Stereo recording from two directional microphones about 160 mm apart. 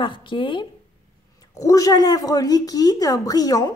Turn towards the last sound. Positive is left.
turn(degrees=20)  # may be behind; listen again after turning